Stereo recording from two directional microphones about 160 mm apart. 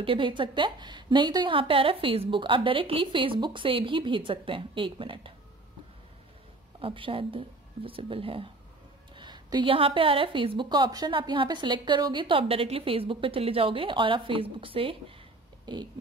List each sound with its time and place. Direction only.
0.0 s a woman's voice: 30° right (ahead or behind)
6.8 s a woman's voice: 35° right (ahead or behind)